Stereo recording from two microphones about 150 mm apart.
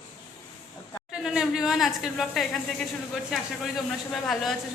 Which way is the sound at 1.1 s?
5° right (ahead or behind).